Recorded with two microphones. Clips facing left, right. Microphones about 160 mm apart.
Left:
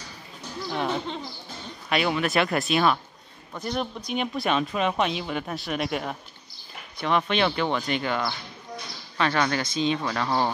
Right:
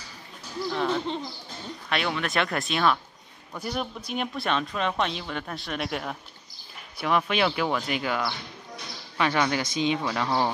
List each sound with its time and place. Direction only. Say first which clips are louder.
0.7 s a sound: right 1 dB; centre (ahead or behind)
1.9 s speech: left 4 dB; 5° left (ahead or behind)
3.5 s speech: left 2 dB; 10° right (ahead or behind)